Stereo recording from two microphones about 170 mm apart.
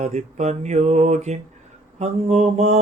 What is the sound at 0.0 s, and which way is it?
Speech, 40° right (ahead or behind).